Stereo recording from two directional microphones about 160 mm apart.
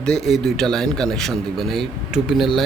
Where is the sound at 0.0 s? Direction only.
Centre (ahead or behind).